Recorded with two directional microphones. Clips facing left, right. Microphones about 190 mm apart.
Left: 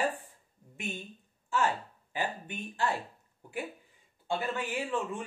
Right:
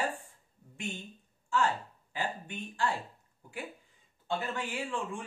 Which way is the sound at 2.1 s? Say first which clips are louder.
Left 1 dB; 15° left (ahead or behind).